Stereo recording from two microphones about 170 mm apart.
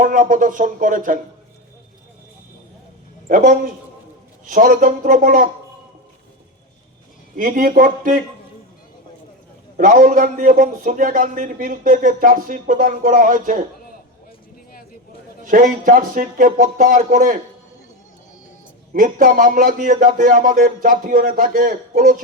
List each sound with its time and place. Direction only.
0.0 s a man's voice: 55° right (ahead or behind)
3.2 s a man's voice: 55° right (ahead or behind)
7.3 s a man's voice: 55° right (ahead or behind)
9.7 s a man's voice: 55° right (ahead or behind)
15.4 s a man's voice: 55° right (ahead or behind)
18.9 s a man's voice: 55° right (ahead or behind)